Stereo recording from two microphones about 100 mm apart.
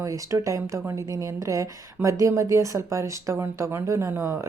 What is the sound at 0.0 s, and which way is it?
A woman's voice, 30° right (ahead or behind).